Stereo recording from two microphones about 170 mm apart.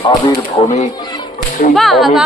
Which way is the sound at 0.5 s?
40° left (ahead or behind).